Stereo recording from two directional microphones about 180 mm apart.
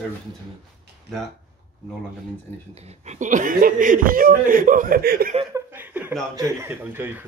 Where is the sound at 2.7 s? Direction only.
40° right (ahead or behind); by 5.3 s 60° right (ahead or behind).